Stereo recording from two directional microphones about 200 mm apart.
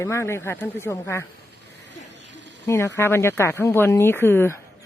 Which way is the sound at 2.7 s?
15° left (ahead or behind).